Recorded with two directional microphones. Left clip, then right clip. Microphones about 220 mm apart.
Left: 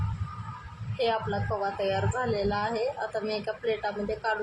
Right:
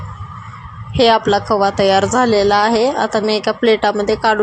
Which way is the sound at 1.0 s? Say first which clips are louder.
Right 16 dB; 40° right (ahead or behind).